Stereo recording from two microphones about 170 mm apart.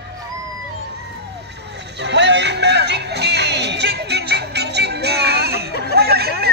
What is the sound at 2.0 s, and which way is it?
Music, 90° right.